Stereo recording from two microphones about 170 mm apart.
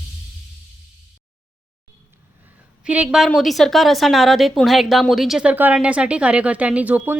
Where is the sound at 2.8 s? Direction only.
5° right (ahead or behind).